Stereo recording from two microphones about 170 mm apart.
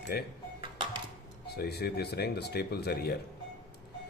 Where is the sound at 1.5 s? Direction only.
70° left (ahead or behind).